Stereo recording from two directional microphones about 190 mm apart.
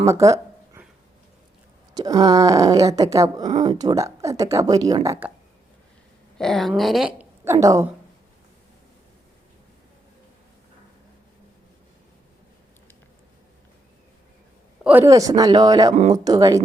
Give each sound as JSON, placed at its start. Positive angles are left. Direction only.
{"t": 0.0, "sound": "a sound", "side_deg": -15}
{"t": 2.0, "sound": "speech", "side_deg": -20}
{"t": 6.3, "sound": "speech", "side_deg": 5}
{"t": 14.8, "sound": "speech", "side_deg": -15}